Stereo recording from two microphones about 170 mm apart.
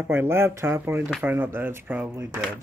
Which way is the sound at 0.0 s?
15° right (ahead or behind).